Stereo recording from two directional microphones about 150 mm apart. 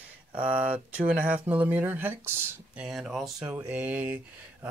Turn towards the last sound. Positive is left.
turn(degrees=-10)  # may be behind; listen again after turning